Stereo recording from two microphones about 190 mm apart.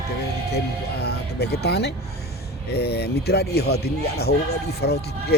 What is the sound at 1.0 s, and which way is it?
Speech, 60° left (ahead or behind).